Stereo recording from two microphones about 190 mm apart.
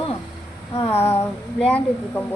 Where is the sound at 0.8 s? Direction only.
10° left (ahead or behind).